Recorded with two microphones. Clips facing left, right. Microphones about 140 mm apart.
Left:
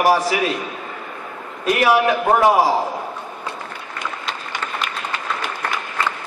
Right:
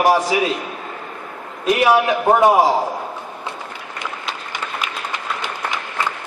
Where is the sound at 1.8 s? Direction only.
15° right (ahead or behind).